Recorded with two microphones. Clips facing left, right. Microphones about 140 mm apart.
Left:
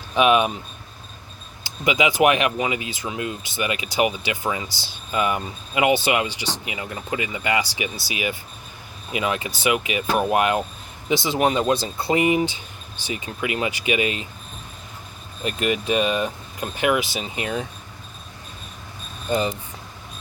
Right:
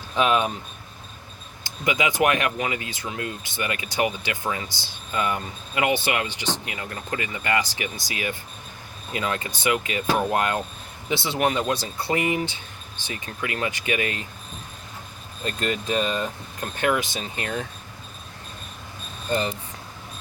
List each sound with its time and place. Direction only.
0.2 s speech: 15° left (ahead or behind)
1.8 s speech: 15° left (ahead or behind)
15.4 s speech: 15° left (ahead or behind)
19.3 s speech: 15° left (ahead or behind)